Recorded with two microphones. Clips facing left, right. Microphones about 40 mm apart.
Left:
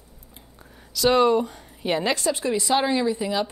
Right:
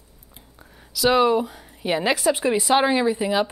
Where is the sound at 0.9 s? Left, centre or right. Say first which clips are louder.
Even; centre.